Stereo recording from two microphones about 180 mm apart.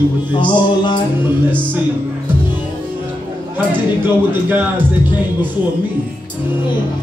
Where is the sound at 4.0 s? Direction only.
10° right (ahead or behind).